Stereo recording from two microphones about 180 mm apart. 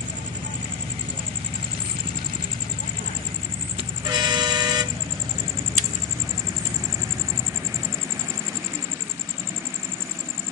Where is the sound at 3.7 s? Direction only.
25° right (ahead or behind).